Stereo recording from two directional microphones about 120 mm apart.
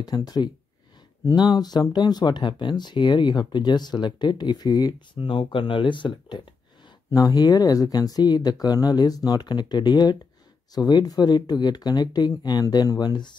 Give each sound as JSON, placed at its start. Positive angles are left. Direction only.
{"t": 0.0, "sound": "speech", "side_deg": 35}
{"t": 5.2, "sound": "speech", "side_deg": 45}
{"t": 7.1, "sound": "speech", "side_deg": 30}